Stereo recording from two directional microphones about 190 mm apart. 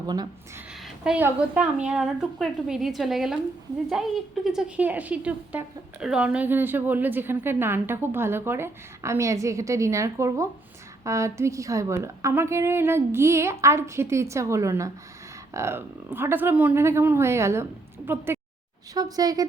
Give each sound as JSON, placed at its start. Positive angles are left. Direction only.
{"t": 1.0, "sound": "a woman's voice", "side_deg": -5}
{"t": 4.4, "sound": "a woman's voice", "side_deg": -5}